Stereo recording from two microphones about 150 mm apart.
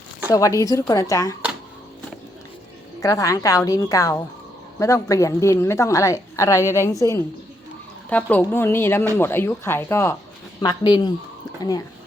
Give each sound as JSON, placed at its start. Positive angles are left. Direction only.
{"t": 0.3, "sound": "a woman's voice", "side_deg": 20}
{"t": 3.0, "sound": "a woman's voice", "side_deg": 20}
{"t": 8.1, "sound": "speech", "side_deg": 10}
{"t": 10.6, "sound": "speech", "side_deg": 30}